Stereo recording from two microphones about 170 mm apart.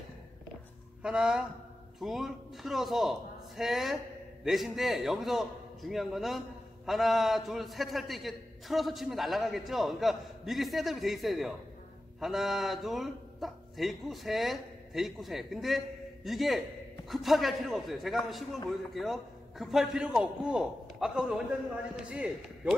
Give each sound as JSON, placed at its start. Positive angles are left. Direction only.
{"t": 1.0, "sound": "a man's voice", "side_deg": -5}